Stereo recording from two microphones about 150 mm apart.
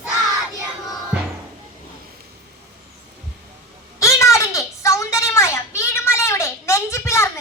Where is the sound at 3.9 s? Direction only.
20° left (ahead or behind).